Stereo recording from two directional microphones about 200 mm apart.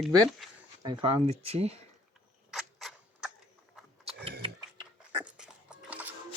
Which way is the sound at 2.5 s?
Centre (ahead or behind).